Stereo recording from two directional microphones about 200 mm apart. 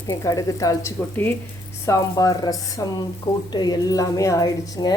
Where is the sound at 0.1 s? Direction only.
15° left (ahead or behind).